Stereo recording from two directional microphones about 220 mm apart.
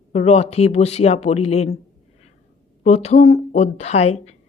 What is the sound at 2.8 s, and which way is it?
Speech, 30° left (ahead or behind).